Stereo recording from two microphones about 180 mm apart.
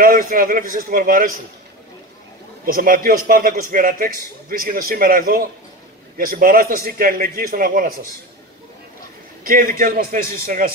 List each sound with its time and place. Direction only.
0.0 s a man's voice: 50° right (ahead or behind)
2.6 s a man's voice: 50° right (ahead or behind)
9.4 s a man's voice: 50° right (ahead or behind)